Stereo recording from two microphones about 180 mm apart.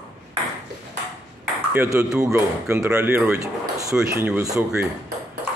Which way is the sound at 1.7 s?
15° right (ahead or behind).